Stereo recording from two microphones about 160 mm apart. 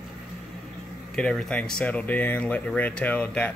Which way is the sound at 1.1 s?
5° left (ahead or behind).